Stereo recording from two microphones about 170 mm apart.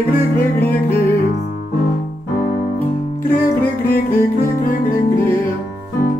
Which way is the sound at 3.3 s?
10° left (ahead or behind).